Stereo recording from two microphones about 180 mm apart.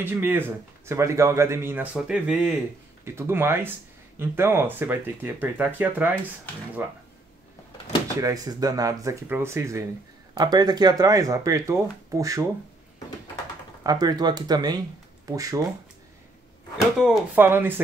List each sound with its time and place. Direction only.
0.0 s speech: 10° right (ahead or behind)
8.2 s speech: 20° right (ahead or behind)
13.8 s speech: 20° right (ahead or behind)
17.0 s speech: 10° right (ahead or behind)